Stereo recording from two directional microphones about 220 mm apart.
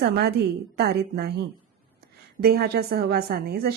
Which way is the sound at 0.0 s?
45° right (ahead or behind).